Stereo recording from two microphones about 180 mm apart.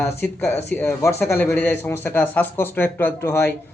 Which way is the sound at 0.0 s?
10° left (ahead or behind).